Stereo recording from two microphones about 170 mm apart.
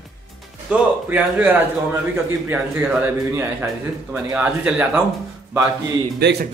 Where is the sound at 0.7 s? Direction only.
10° right (ahead or behind).